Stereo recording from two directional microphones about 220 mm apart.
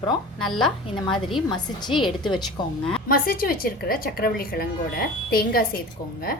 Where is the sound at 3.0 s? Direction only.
40° left (ahead or behind).